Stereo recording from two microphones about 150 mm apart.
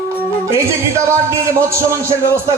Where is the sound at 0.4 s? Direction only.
20° right (ahead or behind).